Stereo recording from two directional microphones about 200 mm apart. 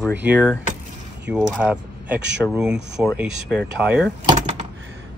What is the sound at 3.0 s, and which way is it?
Speech, 5° right (ahead or behind).